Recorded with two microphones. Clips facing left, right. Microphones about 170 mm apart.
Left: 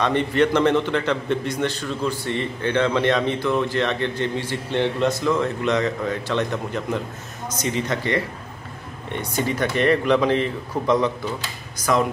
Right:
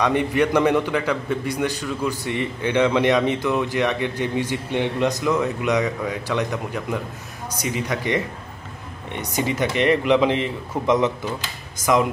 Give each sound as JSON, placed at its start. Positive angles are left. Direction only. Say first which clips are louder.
{"t": 0.0, "sound": "a man's voice", "louder": "even", "side_deg": -10}